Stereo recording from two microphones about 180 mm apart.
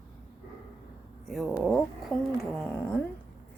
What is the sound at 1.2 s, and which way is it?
Speech, centre (ahead or behind).